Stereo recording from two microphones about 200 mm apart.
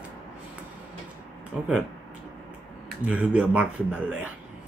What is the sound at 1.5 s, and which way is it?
Speech, 5° right (ahead or behind).